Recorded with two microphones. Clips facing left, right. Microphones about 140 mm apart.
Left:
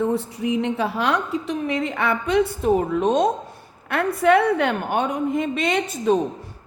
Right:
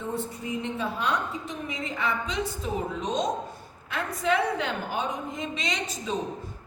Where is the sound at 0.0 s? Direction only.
75° left (ahead or behind).